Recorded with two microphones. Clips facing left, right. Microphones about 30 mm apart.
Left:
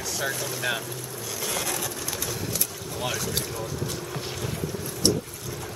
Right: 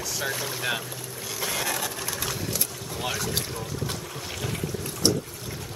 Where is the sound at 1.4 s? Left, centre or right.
Centre.